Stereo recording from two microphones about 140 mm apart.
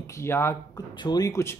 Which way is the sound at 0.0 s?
20° left (ahead or behind).